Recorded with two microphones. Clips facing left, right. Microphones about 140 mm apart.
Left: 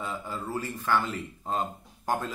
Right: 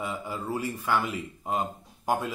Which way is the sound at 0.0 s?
15° right (ahead or behind).